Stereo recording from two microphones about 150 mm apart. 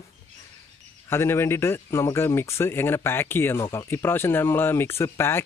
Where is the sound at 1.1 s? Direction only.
15° left (ahead or behind).